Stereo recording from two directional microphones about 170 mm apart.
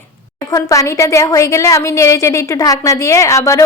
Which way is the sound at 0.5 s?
20° left (ahead or behind).